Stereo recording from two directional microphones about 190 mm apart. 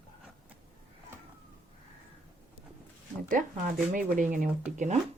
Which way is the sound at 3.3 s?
45° right (ahead or behind).